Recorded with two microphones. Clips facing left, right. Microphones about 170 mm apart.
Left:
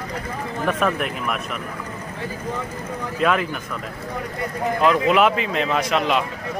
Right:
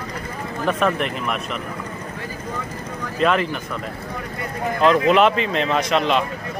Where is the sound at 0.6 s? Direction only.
5° left (ahead or behind).